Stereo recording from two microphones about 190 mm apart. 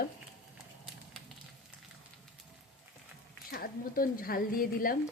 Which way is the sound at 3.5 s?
50° left (ahead or behind).